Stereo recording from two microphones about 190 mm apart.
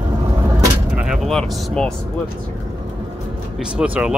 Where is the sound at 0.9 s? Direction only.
Centre (ahead or behind).